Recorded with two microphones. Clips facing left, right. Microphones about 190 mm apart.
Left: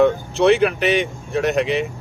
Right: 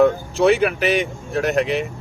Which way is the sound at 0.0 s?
Centre (ahead or behind).